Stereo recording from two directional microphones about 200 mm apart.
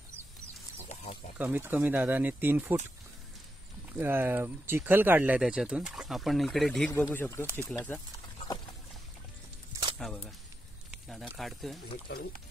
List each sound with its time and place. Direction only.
1.4 s speech: 10° right (ahead or behind)
3.9 s speech: 10° right (ahead or behind); by 8.0 s 10° left (ahead or behind)
9.9 s speech: centre (ahead or behind)
12.1 s speech: 50° left (ahead or behind)